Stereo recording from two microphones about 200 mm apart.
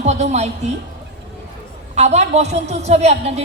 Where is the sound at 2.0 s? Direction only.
35° right (ahead or behind).